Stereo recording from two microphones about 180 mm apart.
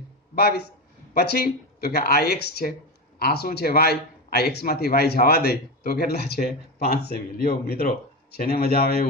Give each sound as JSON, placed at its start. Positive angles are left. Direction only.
{"t": 0.4, "sound": "a man's voice", "side_deg": 60}